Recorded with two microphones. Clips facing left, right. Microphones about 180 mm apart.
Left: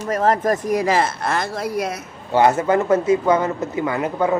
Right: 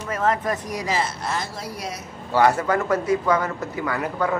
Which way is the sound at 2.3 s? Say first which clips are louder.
Left 3 dB; 20° left (ahead or behind).